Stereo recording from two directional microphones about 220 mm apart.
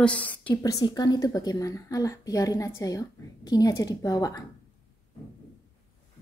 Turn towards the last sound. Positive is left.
turn(degrees=15)  # may be behind; listen again after turning